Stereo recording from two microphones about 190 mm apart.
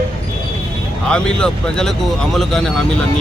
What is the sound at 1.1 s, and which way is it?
Speech, 5° left (ahead or behind).